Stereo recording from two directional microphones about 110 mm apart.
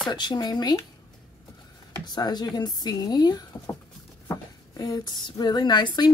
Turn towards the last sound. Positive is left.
turn(degrees=40)  # may be behind; listen again after turning